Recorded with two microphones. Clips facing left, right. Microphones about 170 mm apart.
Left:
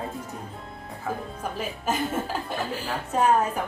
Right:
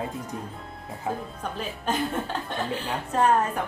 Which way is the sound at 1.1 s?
20° right (ahead or behind).